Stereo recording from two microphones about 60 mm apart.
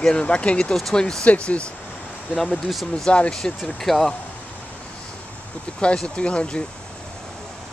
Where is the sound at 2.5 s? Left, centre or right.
Centre.